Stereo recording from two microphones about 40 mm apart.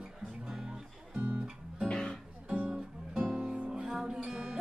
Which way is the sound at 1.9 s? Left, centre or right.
Left.